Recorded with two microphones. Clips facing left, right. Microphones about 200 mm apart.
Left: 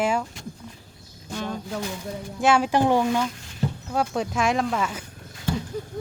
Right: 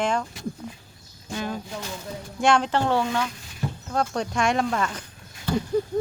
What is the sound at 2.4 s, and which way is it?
Speech, 5° left (ahead or behind).